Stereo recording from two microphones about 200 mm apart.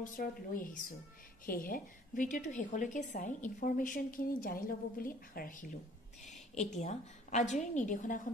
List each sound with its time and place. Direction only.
0.0 s a woman's voice: 45° left (ahead or behind)